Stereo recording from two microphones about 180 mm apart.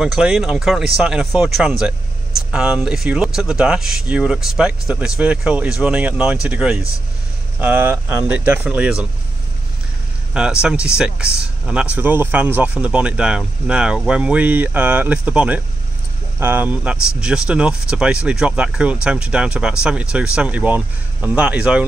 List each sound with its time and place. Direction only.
0.0 s speech: 5° right (ahead or behind)
10.3 s speech: 5° right (ahead or behind)